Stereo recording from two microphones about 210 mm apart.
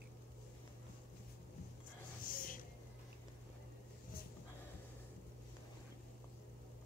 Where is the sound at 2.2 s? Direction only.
40° left (ahead or behind).